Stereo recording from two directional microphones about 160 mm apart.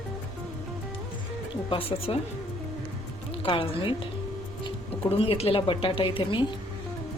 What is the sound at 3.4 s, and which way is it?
Speech, 35° left (ahead or behind).